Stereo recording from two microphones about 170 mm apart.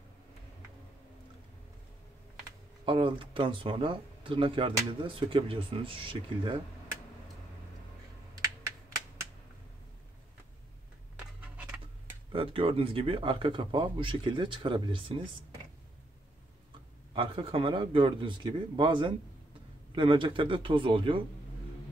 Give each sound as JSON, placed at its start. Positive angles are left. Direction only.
{"t": 2.8, "sound": "speech", "side_deg": -30}
{"t": 11.4, "sound": "a sound", "side_deg": -5}
{"t": 12.3, "sound": "speech", "side_deg": -30}
{"t": 17.1, "sound": "speech", "side_deg": -35}